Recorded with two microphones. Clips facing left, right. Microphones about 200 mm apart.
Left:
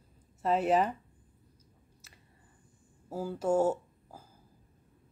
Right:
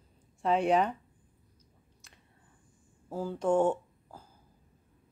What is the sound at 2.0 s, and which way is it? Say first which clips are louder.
Squish: even; 5° left (ahead or behind).